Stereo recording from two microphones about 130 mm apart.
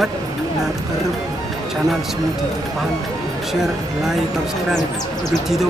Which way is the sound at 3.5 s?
Centre (ahead or behind).